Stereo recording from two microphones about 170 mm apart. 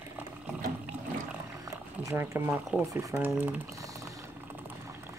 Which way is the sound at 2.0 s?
15° right (ahead or behind).